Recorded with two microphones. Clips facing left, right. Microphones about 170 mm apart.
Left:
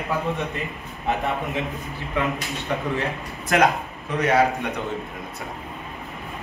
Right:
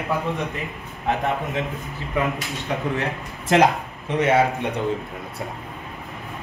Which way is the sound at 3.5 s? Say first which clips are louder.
Right 2 dB; 25° right (ahead or behind).